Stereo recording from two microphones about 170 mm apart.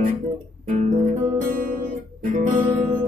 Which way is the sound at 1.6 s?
50° right (ahead or behind).